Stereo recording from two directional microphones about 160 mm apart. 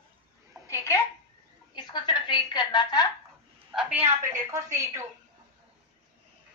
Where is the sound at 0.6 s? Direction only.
20° left (ahead or behind).